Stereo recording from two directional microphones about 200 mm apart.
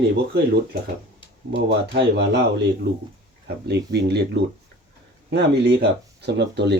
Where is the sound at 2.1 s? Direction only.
55° right (ahead or behind).